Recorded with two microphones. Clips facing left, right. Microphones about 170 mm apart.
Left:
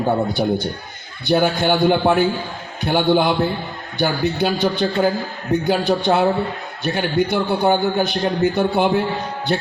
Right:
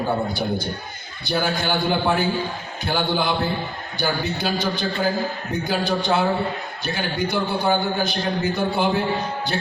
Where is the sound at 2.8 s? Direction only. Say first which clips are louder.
Left 6 dB; 60° left (ahead or behind).